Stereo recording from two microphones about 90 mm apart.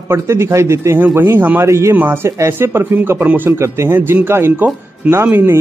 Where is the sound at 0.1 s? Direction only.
30° right (ahead or behind).